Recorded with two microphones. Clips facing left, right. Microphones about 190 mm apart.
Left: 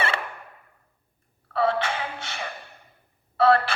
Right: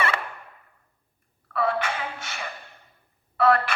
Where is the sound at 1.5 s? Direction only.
30° left (ahead or behind).